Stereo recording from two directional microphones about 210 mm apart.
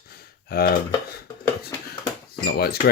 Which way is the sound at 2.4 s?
50° left (ahead or behind).